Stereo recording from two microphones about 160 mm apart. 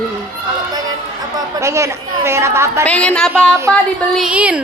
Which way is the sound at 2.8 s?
10° left (ahead or behind).